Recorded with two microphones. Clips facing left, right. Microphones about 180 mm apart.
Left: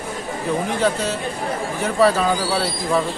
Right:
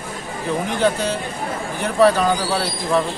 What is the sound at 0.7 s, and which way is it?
Speech, centre (ahead or behind).